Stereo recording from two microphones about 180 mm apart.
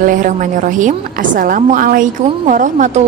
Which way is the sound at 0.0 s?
45° right (ahead or behind).